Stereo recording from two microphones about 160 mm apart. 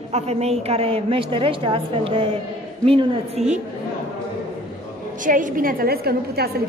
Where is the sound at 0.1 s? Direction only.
40° right (ahead or behind).